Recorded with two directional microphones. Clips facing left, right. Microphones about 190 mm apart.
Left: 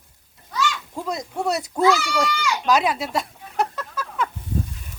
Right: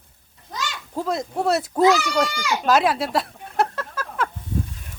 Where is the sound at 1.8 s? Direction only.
35° right (ahead or behind).